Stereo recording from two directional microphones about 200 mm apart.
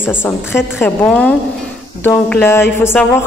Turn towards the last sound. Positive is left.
turn(degrees=10)  # may be behind; listen again after turning